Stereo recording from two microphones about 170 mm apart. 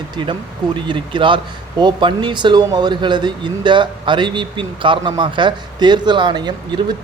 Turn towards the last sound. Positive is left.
turn(degrees=-25)  # may be behind; listen again after turning